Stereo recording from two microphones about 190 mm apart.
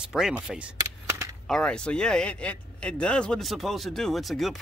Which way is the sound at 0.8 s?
15° right (ahead or behind).